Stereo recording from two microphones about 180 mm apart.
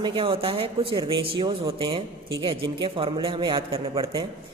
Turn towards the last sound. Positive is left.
turn(degrees=-30)  # may be behind; listen again after turning